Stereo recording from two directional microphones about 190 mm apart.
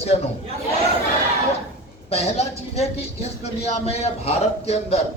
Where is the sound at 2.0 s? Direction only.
35° left (ahead or behind).